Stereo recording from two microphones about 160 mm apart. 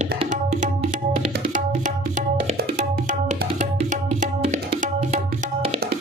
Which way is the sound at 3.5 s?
50° right (ahead or behind).